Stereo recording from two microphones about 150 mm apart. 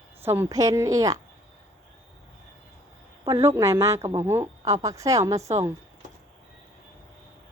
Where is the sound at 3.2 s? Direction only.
20° right (ahead or behind).